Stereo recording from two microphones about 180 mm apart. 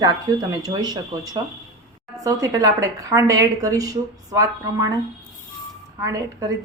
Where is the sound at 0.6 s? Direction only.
25° right (ahead or behind).